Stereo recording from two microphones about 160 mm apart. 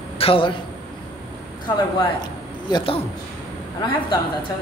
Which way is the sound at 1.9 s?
30° left (ahead or behind).